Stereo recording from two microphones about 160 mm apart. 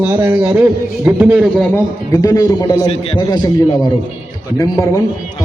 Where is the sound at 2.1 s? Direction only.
20° left (ahead or behind).